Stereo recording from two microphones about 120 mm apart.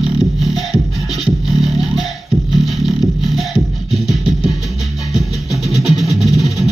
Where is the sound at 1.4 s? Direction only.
Centre (ahead or behind).